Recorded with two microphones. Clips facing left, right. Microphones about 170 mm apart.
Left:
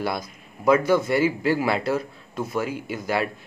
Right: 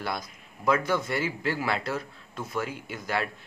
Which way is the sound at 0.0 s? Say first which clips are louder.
Left 6 dB; 10° left (ahead or behind).